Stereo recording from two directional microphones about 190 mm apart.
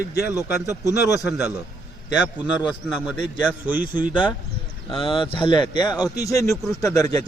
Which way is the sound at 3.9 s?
10° right (ahead or behind).